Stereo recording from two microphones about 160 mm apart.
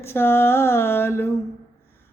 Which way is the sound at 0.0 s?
15° left (ahead or behind).